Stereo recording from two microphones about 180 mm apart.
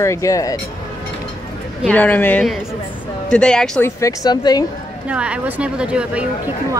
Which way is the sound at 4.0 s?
20° left (ahead or behind).